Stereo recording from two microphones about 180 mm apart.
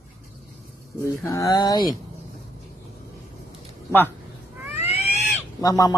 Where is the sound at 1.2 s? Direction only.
20° left (ahead or behind).